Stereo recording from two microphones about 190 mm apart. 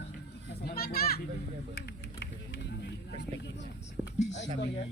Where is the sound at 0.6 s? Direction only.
55° left (ahead or behind).